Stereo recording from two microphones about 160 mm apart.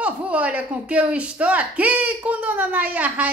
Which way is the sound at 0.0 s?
10° right (ahead or behind).